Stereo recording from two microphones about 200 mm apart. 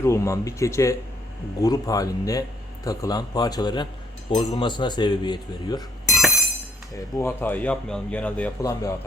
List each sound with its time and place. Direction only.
0.0 s a man's voice: 15° left (ahead or behind)
6.1 s a sound: centre (ahead or behind)
6.9 s speech: 10° left (ahead or behind)